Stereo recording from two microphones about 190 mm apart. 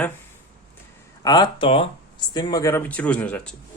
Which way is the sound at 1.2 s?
20° left (ahead or behind).